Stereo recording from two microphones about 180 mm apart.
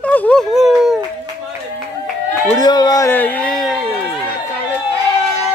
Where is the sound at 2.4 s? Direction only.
20° left (ahead or behind); by 3.7 s 5° left (ahead or behind).